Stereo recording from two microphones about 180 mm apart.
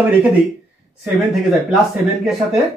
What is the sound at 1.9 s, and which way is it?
Speech, centre (ahead or behind).